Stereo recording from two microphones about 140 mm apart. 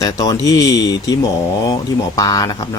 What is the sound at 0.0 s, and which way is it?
Speech, 25° left (ahead or behind).